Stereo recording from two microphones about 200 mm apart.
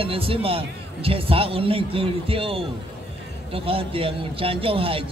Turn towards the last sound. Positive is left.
turn(degrees=-25)  # may be behind; listen again after turning